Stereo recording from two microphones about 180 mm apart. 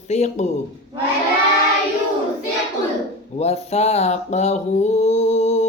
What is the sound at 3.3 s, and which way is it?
Mantra, 35° left (ahead or behind).